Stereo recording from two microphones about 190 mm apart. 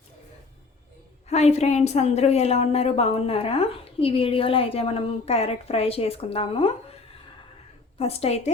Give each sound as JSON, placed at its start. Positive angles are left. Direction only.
{"t": 1.3, "sound": "a woman's voice", "side_deg": 35}
{"t": 7.9, "sound": "a woman's voice", "side_deg": 30}